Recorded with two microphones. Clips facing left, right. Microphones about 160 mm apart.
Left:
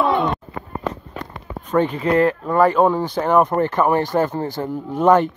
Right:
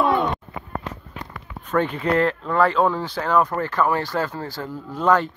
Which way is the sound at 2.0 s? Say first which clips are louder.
Left 4 dB; 10° left (ahead or behind).